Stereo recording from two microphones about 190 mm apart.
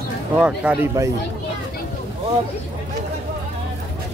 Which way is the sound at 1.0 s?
15° right (ahead or behind).